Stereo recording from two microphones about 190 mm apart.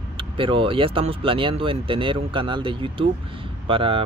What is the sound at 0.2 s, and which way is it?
Speech, 25° right (ahead or behind).